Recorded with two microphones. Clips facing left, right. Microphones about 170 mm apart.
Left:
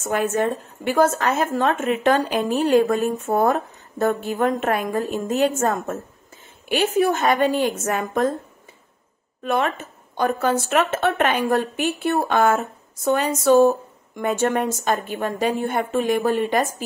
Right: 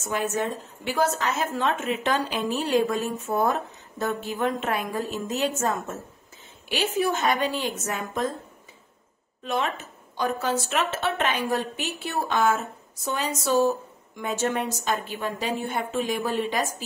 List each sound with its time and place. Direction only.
0.0 s a woman's voice: 55° left (ahead or behind)
9.4 s speech: 55° left (ahead or behind)